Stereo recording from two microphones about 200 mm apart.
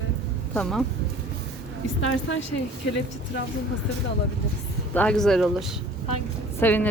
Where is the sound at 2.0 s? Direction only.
70° left (ahead or behind).